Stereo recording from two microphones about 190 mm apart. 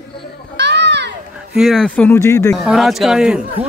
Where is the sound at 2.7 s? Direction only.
Centre (ahead or behind).